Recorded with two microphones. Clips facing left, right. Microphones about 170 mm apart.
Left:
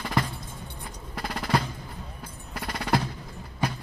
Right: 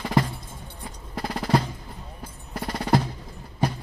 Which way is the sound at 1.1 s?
35° right (ahead or behind).